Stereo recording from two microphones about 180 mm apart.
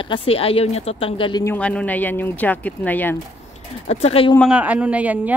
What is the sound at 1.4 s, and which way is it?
Speech, 10° left (ahead or behind).